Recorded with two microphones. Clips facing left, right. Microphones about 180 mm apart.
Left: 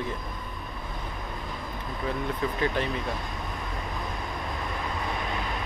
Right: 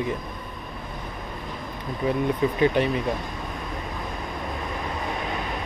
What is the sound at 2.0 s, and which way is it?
Speech, 15° right (ahead or behind).